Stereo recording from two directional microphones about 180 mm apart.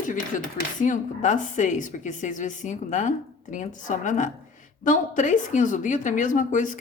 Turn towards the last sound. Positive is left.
turn(degrees=45)  # may be behind; listen again after turning